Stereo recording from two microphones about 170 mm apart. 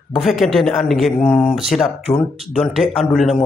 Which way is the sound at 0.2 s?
Centre (ahead or behind).